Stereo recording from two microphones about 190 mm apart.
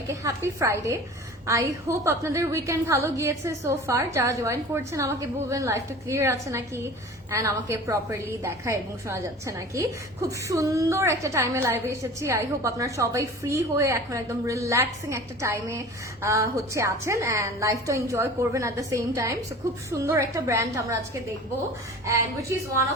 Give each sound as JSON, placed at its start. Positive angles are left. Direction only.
{"t": 0.1, "sound": "a woman's voice", "side_deg": -15}
{"t": 22.0, "sound": "a woman's voice", "side_deg": -15}